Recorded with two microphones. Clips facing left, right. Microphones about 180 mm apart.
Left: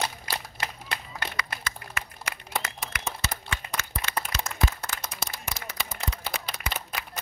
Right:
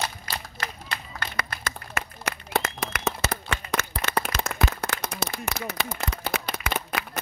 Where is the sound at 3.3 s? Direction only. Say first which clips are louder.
Right 6 dB; 70° right (ahead or behind); by 6.3 s 50° right (ahead or behind).